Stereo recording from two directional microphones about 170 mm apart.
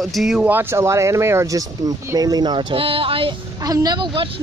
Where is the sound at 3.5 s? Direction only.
20° right (ahead or behind).